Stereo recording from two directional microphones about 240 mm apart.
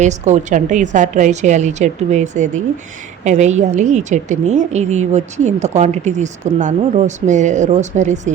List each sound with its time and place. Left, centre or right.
0.0 s a woman's voice: right